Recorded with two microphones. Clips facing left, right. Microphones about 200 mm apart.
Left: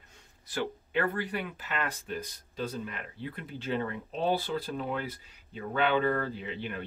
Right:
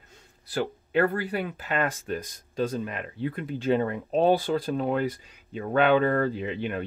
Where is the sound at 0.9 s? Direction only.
40° right (ahead or behind).